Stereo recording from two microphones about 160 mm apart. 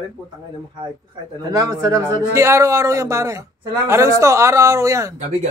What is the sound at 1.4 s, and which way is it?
A man's voice, 20° right (ahead or behind).